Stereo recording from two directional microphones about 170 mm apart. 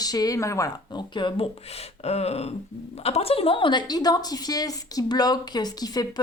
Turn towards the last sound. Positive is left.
turn(degrees=25)  # may be behind; listen again after turning